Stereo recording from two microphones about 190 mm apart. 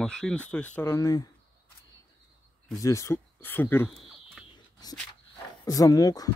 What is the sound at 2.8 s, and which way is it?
Speech, 15° left (ahead or behind).